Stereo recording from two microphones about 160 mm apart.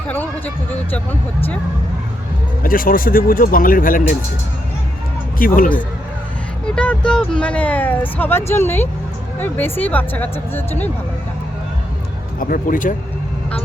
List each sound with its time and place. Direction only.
0.1 s speech: 10° left (ahead or behind)
2.6 s speech: 60° left (ahead or behind)
5.4 s speech: 60° left (ahead or behind)
6.7 s speech: 5° left (ahead or behind)
12.4 s speech: 55° left (ahead or behind)